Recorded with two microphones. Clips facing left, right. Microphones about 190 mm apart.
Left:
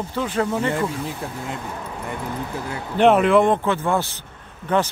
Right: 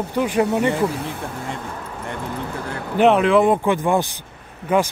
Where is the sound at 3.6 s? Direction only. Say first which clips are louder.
Right 3 dB; 15° right (ahead or behind).